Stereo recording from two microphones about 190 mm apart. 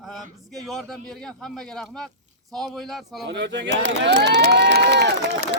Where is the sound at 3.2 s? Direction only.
65° right (ahead or behind).